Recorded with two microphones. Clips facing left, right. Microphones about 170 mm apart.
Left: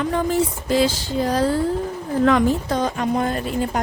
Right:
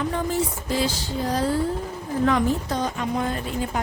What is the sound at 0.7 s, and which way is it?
A woman's voice, 85° left.